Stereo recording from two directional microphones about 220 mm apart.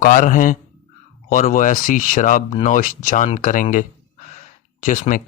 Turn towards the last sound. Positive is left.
turn(degrees=35)  # may be behind; listen again after turning